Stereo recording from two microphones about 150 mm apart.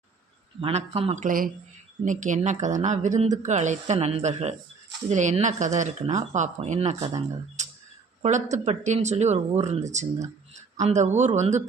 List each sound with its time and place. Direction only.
0.6 s speech: 45° right (ahead or behind)